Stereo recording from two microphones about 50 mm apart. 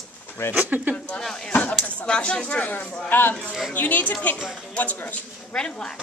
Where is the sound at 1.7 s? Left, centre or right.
Centre.